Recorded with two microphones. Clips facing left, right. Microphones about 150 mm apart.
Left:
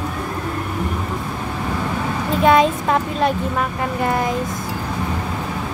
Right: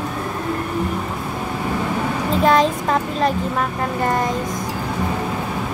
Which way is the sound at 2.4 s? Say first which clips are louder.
Left 2 dB; centre (ahead or behind).